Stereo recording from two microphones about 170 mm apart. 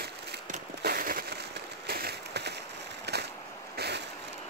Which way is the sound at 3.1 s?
75° right (ahead or behind).